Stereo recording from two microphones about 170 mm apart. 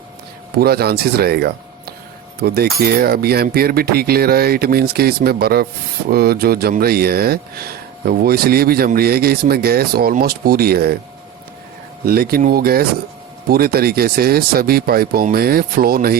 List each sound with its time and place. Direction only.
0.6 s speech: 65° right (ahead or behind)
12.0 s speech: 60° right (ahead or behind)